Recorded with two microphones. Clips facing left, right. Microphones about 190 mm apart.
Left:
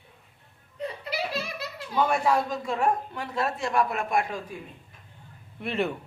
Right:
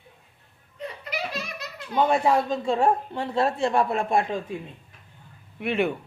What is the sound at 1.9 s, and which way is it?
Speech, 25° right (ahead or behind).